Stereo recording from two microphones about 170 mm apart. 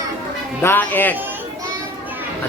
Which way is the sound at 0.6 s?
10° left (ahead or behind).